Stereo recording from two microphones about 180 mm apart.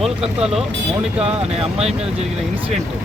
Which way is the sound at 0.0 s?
5° right (ahead or behind).